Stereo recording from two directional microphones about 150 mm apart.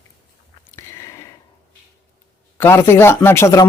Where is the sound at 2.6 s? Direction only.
15° left (ahead or behind).